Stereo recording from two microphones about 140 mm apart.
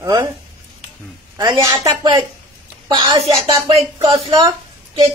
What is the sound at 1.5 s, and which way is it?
Speech, 20° right (ahead or behind).